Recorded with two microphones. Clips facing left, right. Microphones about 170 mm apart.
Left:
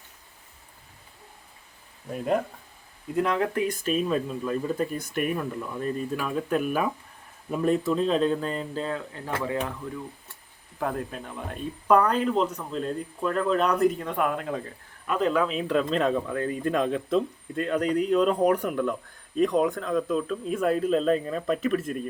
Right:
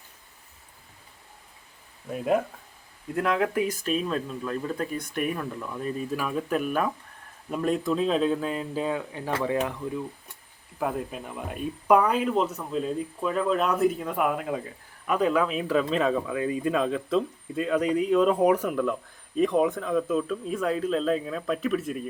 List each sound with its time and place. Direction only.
2.1 s speech: 5° right (ahead or behind)
10.8 s speech: 5° right (ahead or behind)